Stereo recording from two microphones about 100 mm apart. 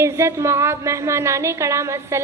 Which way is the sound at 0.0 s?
30° right (ahead or behind).